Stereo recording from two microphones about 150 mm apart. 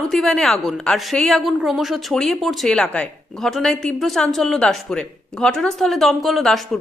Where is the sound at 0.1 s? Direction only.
5° left (ahead or behind).